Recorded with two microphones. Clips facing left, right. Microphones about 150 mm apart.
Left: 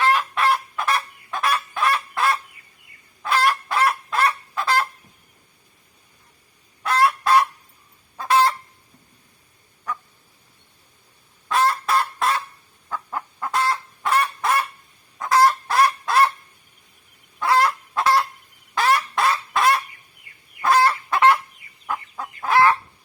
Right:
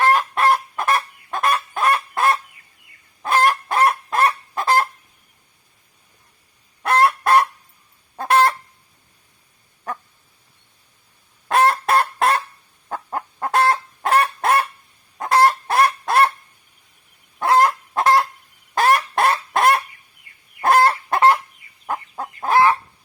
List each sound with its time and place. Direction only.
0.2 s chicken: 45° right (ahead or behind)
1.7 s fowl: 45° right (ahead or behind)
3.2 s goose: 50° right (ahead or behind)
6.8 s fowl: 60° right (ahead or behind)
11.4 s goose: 55° right (ahead or behind)
13.1 s chicken: 40° right (ahead or behind)
13.5 s chicken: 55° right (ahead or behind)
15.2 s fowl: 60° right (ahead or behind)
17.4 s fowl: 50° right (ahead or behind)
18.7 s goose: 50° right (ahead or behind)
20.6 s fowl: 55° right (ahead or behind)
20.9 s fowl: 35° right (ahead or behind)